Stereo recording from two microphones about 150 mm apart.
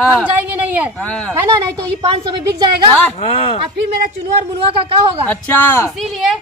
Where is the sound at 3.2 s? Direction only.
35° left (ahead or behind).